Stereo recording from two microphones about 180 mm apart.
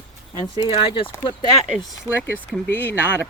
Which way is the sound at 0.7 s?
30° left (ahead or behind).